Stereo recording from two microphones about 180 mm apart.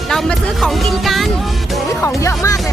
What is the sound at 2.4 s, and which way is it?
Music, 15° left (ahead or behind).